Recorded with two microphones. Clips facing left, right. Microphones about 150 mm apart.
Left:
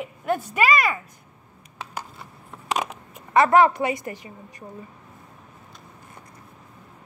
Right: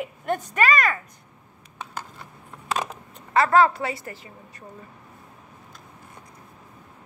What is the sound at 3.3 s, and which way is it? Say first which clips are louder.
Speech: left 2 dB; 20° left (ahead or behind).